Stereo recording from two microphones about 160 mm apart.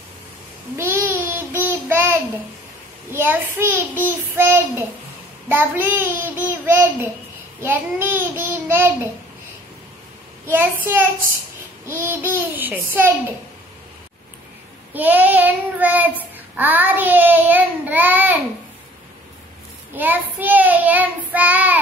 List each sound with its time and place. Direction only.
0.7 s child singing: 15° right (ahead or behind)
10.4 s child singing: 15° right (ahead or behind)
15.0 s child singing: 10° right (ahead or behind)
20.0 s child singing: 10° right (ahead or behind)